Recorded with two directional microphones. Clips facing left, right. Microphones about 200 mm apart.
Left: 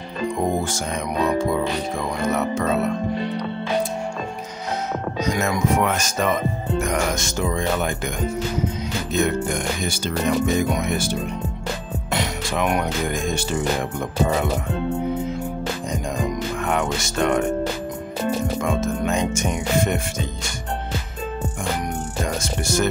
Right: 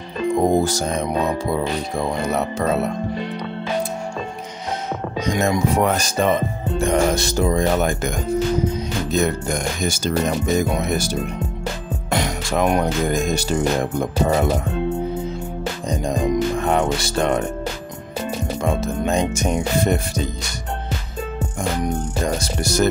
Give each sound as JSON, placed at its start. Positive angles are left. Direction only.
{"t": 0.6, "sound": "speech", "side_deg": -40}
{"t": 5.4, "sound": "speech", "side_deg": -35}
{"t": 9.1, "sound": "speech", "side_deg": -40}
{"t": 12.1, "sound": "music", "side_deg": -45}
{"t": 12.6, "sound": "speech", "side_deg": -30}
{"t": 15.9, "sound": "music", "side_deg": -35}
{"t": 18.6, "sound": "speech", "side_deg": -35}
{"t": 22.4, "sound": "speech", "side_deg": -40}